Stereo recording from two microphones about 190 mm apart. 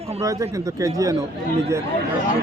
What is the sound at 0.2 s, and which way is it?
Speech, 20° right (ahead or behind).